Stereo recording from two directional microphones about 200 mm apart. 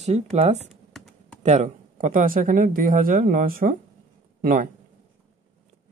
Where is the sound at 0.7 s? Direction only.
Centre (ahead or behind).